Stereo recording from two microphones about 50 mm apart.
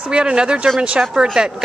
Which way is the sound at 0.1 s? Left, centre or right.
Centre.